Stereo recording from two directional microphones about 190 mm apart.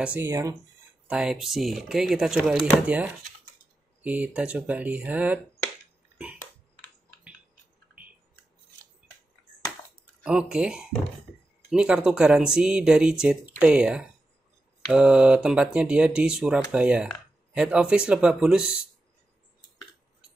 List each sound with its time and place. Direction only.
0.0 s speech: 10° right (ahead or behind)
4.0 s speech: 10° right (ahead or behind)
10.2 s speech: 5° right (ahead or behind)